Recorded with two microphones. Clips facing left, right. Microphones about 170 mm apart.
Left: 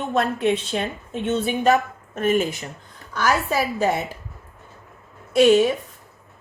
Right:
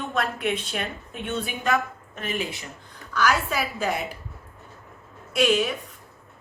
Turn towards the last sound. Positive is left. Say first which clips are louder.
# left 7 dB
turn(degrees=30)  # may be behind; listen again after turning